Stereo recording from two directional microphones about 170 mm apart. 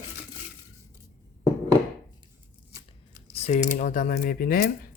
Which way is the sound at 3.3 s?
40° left (ahead or behind).